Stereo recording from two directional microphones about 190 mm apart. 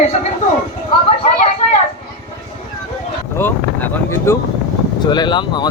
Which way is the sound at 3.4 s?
10° left (ahead or behind).